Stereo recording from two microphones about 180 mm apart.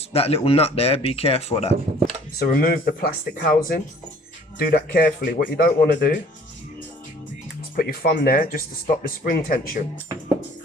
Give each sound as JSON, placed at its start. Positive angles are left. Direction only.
{"t": 0.1, "sound": "speech", "side_deg": 35}
{"t": 2.4, "sound": "speech", "side_deg": 55}
{"t": 7.8, "sound": "speech", "side_deg": 55}